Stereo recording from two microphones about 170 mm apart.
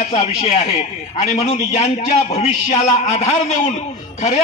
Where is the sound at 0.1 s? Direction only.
40° left (ahead or behind).